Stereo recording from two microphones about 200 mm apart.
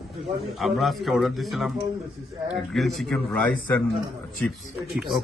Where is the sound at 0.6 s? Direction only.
Centre (ahead or behind).